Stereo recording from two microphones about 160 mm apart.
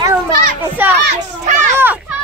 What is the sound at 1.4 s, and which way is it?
Speech, 50° right (ahead or behind).